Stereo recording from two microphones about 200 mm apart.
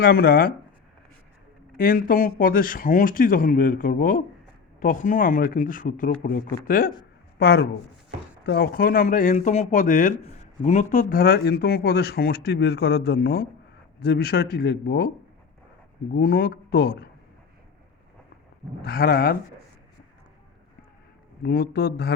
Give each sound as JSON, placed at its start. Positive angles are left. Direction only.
{"t": 0.0, "sound": "speech", "side_deg": 50}
{"t": 1.8, "sound": "speech", "side_deg": 45}
{"t": 16.1, "sound": "speech", "side_deg": 50}
{"t": 18.8, "sound": "speech", "side_deg": 50}
{"t": 21.4, "sound": "speech", "side_deg": 50}